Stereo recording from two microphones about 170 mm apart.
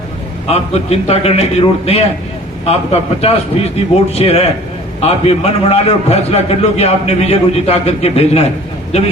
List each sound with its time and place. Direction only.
0.4 s a man's voice: 35° left (ahead or behind)